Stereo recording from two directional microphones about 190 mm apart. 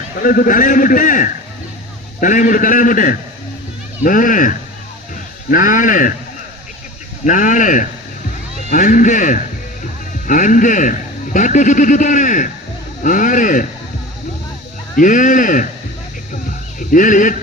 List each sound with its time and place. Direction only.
0.2 s a man's voice: 50° left (ahead or behind)
7.3 s a man's voice: 40° left (ahead or behind)
14.9 s a man's voice: 45° left (ahead or behind)
16.9 s a man's voice: 45° left (ahead or behind)